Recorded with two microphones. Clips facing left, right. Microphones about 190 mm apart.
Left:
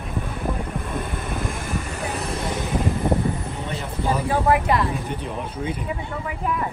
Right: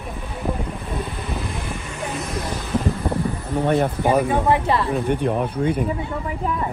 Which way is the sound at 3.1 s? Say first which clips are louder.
Left 2 dB; 20° left (ahead or behind).